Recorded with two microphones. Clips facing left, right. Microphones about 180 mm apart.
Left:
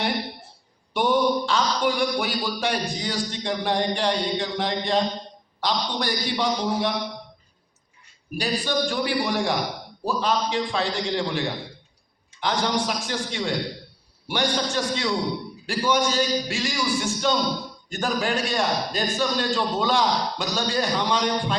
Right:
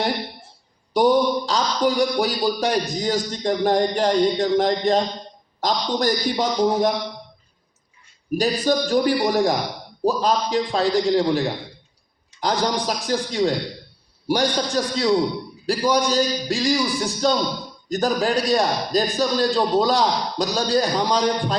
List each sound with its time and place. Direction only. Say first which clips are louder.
0.9 s a man's voice: right 4 dB; 40° right (ahead or behind)
8.4 s a man's voice: right 5 dB; 40° right (ahead or behind)